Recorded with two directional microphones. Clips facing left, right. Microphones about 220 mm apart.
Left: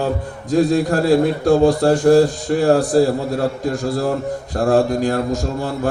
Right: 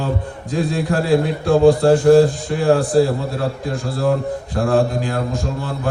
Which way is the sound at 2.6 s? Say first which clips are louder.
Even; 40° left (ahead or behind).